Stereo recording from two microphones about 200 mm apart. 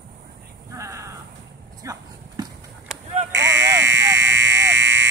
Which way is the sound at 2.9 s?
Centre (ahead or behind).